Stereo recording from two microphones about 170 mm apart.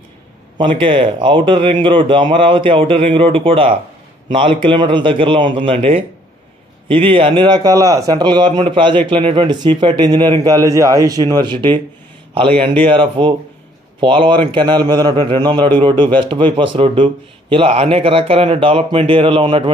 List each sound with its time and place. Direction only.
0.6 s speech: 30° right (ahead or behind)